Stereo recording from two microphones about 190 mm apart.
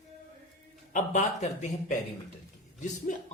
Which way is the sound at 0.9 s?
40° left (ahead or behind).